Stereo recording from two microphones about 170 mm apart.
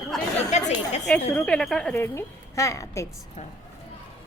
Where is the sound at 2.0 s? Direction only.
15° left (ahead or behind).